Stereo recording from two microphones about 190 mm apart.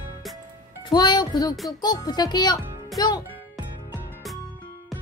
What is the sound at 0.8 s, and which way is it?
Speech, 25° left (ahead or behind).